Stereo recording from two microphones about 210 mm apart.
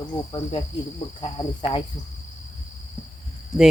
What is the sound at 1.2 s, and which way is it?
Speech, 25° left (ahead or behind).